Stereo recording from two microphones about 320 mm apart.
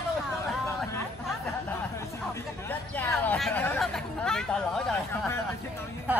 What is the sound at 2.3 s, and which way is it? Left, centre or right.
Speech, centre.